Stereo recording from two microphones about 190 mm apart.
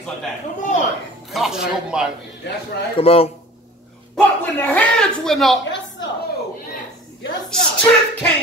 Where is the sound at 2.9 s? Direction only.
30° left (ahead or behind).